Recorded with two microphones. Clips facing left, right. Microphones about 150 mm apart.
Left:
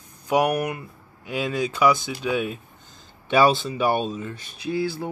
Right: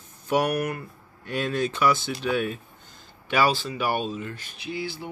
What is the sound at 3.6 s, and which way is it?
Speech, 20° left (ahead or behind).